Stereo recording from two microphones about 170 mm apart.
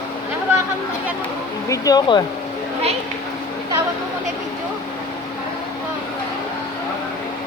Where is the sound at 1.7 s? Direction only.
20° left (ahead or behind).